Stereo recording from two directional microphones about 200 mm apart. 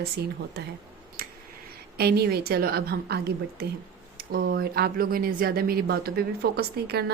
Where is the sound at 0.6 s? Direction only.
55° right (ahead or behind).